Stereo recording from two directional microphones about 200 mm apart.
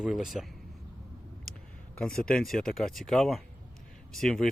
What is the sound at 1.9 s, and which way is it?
Speech, 5° left (ahead or behind).